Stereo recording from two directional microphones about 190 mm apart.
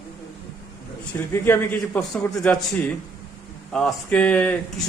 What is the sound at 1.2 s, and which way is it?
A man's voice, 10° left (ahead or behind).